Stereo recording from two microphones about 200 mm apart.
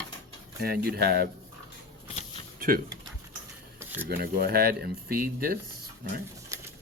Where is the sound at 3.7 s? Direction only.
10° right (ahead or behind).